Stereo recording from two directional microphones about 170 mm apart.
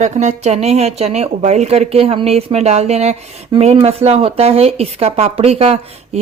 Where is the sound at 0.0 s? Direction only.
45° right (ahead or behind).